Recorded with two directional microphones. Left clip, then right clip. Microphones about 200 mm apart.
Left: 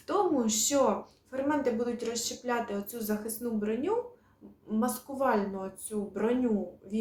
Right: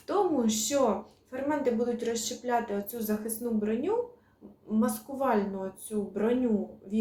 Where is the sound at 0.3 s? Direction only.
10° left (ahead or behind).